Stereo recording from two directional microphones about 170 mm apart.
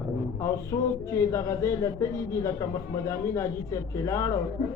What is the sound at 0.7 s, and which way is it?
A man's voice, 20° left (ahead or behind).